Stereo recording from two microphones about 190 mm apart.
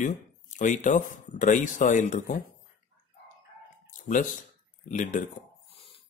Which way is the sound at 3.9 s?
45° left (ahead or behind).